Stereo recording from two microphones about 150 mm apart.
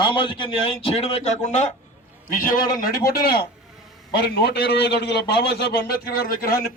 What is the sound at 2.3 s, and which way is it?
A man's voice, 65° left (ahead or behind).